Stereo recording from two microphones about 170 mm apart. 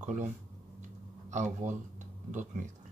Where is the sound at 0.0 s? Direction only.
45° right (ahead or behind).